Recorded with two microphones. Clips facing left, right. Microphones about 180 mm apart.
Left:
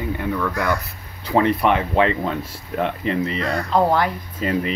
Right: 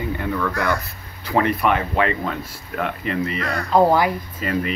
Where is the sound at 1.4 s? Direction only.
25° left (ahead or behind).